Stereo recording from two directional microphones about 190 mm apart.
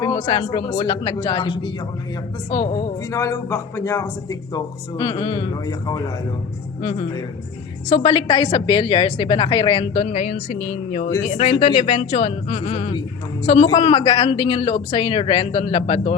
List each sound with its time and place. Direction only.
0.0 s a man's voice: 20° left (ahead or behind)
3.1 s a man's voice: 15° left (ahead or behind)